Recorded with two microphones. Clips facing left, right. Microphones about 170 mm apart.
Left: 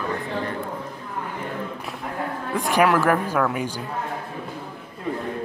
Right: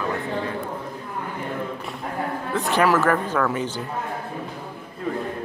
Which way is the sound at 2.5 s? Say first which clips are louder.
Left 1 dB; 10° left (ahead or behind).